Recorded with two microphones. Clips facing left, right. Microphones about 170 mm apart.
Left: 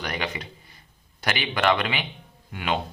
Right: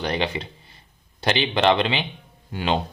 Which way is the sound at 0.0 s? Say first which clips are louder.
Right 5 dB; 30° right (ahead or behind).